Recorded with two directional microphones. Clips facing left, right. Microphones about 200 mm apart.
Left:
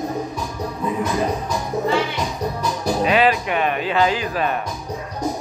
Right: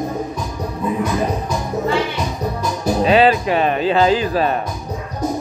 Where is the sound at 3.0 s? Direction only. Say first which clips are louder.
Right 5 dB; 30° right (ahead or behind).